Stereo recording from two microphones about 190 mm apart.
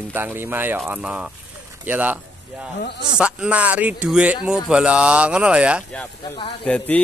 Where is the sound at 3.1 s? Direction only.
5° right (ahead or behind).